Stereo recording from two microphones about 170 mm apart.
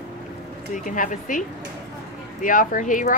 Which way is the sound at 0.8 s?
50° left (ahead or behind).